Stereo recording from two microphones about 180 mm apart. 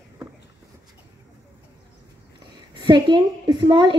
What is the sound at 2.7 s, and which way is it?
A woman's voice, 25° right (ahead or behind).